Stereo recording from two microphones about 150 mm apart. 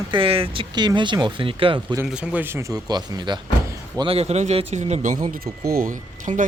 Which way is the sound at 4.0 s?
40° right (ahead or behind).